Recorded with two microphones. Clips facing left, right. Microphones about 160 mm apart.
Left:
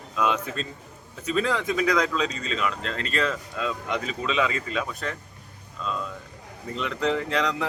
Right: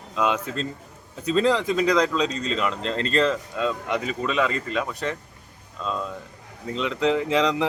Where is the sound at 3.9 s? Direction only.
5° right (ahead or behind).